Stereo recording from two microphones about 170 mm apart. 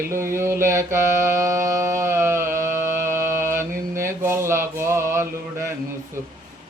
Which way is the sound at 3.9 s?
15° right (ahead or behind).